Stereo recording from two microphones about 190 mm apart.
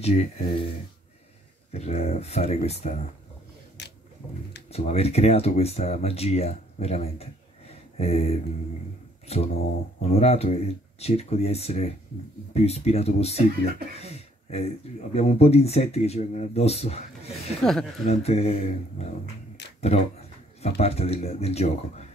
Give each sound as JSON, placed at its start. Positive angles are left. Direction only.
{"t": 0.0, "sound": "speech", "side_deg": 35}
{"t": 1.7, "sound": "speech", "side_deg": 35}
{"t": 3.8, "sound": "a sound", "side_deg": 65}
{"t": 4.6, "sound": "speech", "side_deg": 35}
{"t": 13.9, "sound": "a sound", "side_deg": 35}
{"t": 15.1, "sound": "speech", "side_deg": 35}
{"t": 17.6, "sound": "speech", "side_deg": 5}
{"t": 18.0, "sound": "speech", "side_deg": 35}
{"t": 19.8, "sound": "a sound", "side_deg": 35}
{"t": 20.8, "sound": "speech", "side_deg": 35}